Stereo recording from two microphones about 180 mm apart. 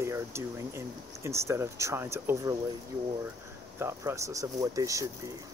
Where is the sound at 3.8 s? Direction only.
15° right (ahead or behind).